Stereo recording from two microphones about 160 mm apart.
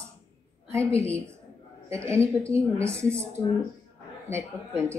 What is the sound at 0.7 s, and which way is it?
Speech, 15° right (ahead or behind).